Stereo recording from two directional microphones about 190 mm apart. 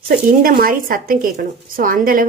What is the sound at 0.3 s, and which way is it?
A woman's voice, 50° right (ahead or behind).